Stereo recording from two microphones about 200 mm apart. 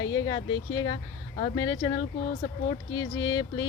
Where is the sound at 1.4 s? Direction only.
20° left (ahead or behind).